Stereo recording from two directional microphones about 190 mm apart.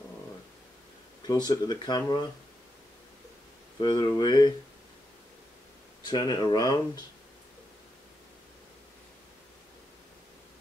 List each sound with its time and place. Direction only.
1.2 s speech: 20° left (ahead or behind)
3.8 s speech: 20° left (ahead or behind)
6.0 s speech: 20° left (ahead or behind)